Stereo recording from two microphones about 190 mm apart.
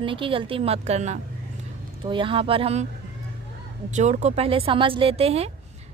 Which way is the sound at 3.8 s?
40° right (ahead or behind).